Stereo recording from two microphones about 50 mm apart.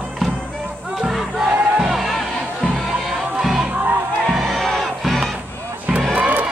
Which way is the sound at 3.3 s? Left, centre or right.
Centre.